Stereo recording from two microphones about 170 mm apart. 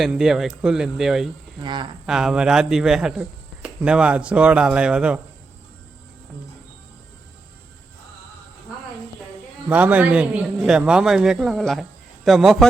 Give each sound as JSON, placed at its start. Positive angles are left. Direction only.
{"t": 0.0, "sound": "speech", "side_deg": -5}
{"t": 1.6, "sound": "speech", "side_deg": -25}
{"t": 2.0, "sound": "speech", "side_deg": 0}
{"t": 9.6, "sound": "speech", "side_deg": -10}